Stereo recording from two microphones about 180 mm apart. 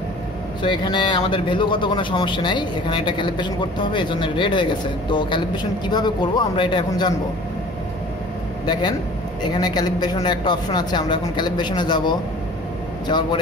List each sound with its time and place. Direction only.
0.6 s a man's voice: 25° left (ahead or behind)
9.4 s a man's voice: 25° left (ahead or behind)